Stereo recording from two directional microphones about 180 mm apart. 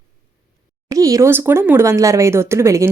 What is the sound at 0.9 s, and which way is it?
Speech, 20° right (ahead or behind).